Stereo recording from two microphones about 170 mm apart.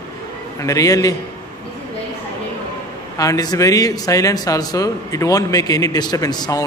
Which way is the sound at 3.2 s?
20° left (ahead or behind).